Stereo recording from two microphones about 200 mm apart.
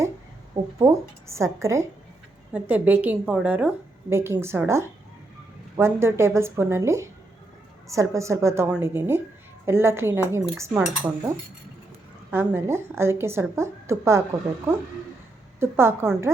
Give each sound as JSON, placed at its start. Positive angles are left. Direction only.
{"t": 0.8, "sound": "a woman's voice", "side_deg": -15}
{"t": 15.6, "sound": "a woman's voice", "side_deg": -10}